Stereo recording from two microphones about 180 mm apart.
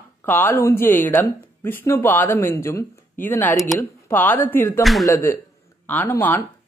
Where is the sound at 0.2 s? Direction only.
10° left (ahead or behind).